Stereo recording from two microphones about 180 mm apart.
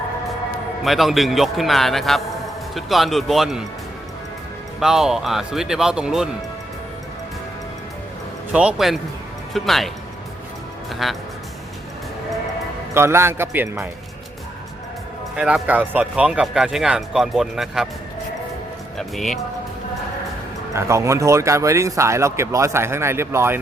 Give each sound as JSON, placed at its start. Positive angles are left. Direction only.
{"t": 0.9, "sound": "speech", "side_deg": 0}
{"t": 4.8, "sound": "speech", "side_deg": -5}
{"t": 8.5, "sound": "speech", "side_deg": -5}
{"t": 11.0, "sound": "speech", "side_deg": 0}
{"t": 12.9, "sound": "speech", "side_deg": -15}
{"t": 15.4, "sound": "speech", "side_deg": -5}
{"t": 18.9, "sound": "speech", "side_deg": 0}
{"t": 20.7, "sound": "speech", "side_deg": -15}